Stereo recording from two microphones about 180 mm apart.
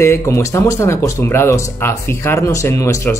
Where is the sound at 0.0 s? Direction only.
15° left (ahead or behind).